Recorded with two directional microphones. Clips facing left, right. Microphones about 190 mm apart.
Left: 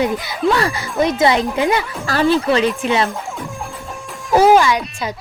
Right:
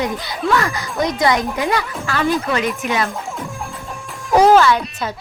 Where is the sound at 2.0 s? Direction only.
35° left (ahead or behind).